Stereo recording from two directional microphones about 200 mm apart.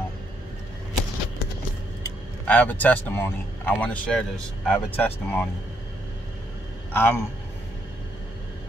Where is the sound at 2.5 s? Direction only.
10° left (ahead or behind).